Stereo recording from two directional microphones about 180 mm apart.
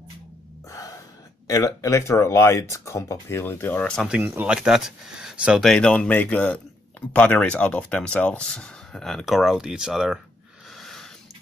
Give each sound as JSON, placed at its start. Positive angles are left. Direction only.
{"t": 0.7, "sound": "gasp", "side_deg": 20}
{"t": 1.5, "sound": "speech", "side_deg": 20}
{"t": 4.2, "sound": "speech", "side_deg": -10}
{"t": 10.8, "sound": "a sound", "side_deg": 0}